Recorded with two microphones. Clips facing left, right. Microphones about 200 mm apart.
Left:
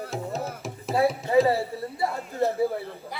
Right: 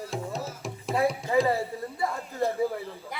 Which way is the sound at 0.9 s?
30° left (ahead or behind).